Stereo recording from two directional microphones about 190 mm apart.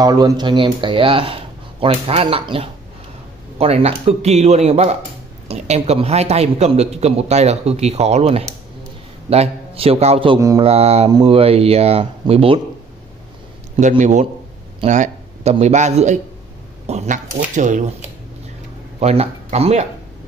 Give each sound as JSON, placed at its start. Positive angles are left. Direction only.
{"t": 0.0, "sound": "a man's voice", "side_deg": -20}
{"t": 10.6, "sound": "a man's voice", "side_deg": -35}
{"t": 13.7, "sound": "a man's voice", "side_deg": -40}
{"t": 16.8, "sound": "a sound", "side_deg": -35}
{"t": 17.6, "sound": "a man's voice", "side_deg": -40}
{"t": 18.9, "sound": "speech", "side_deg": -35}